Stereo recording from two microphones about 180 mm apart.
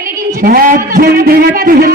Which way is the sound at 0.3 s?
55° right (ahead or behind).